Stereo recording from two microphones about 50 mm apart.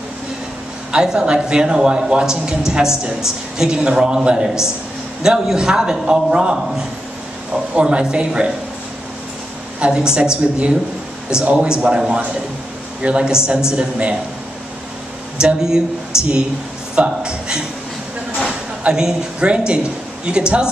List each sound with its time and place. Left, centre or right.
0.9 s a man's voice: centre
7.7 s a woman's voice: centre
9.8 s a man's voice: centre
15.4 s a man's voice: centre
18.9 s a woman's voice: centre